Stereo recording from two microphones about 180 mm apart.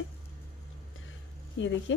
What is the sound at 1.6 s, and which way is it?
Speech, 90° left.